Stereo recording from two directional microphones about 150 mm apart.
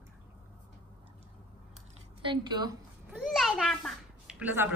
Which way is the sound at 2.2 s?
30° right (ahead or behind).